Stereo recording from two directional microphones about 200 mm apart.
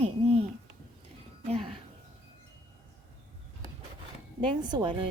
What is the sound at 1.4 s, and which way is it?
Speech, 30° right (ahead or behind).